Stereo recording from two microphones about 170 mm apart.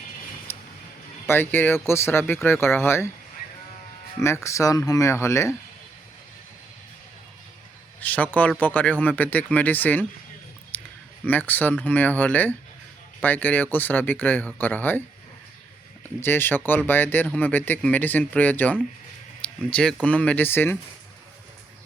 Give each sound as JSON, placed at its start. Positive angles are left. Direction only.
{"t": 1.3, "sound": "speech", "side_deg": 10}
{"t": 4.4, "sound": "speech", "side_deg": 20}
{"t": 8.0, "sound": "speech", "side_deg": 10}
{"t": 10.7, "sound": "clicking", "side_deg": 10}
{"t": 11.3, "sound": "speech", "side_deg": 10}
{"t": 16.2, "sound": "speech", "side_deg": 10}